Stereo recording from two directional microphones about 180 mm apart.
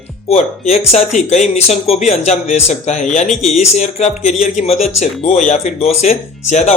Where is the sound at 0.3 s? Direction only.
35° left (ahead or behind).